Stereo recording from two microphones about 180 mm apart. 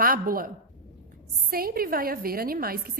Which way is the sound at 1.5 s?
55° right (ahead or behind).